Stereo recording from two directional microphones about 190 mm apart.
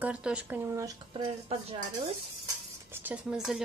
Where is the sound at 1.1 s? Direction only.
30° right (ahead or behind).